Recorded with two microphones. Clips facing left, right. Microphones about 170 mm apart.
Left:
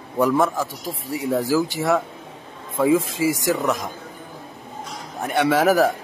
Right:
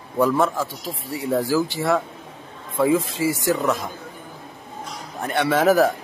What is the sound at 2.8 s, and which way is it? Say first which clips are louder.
Speech: left 1 dB; 10° left (ahead or behind).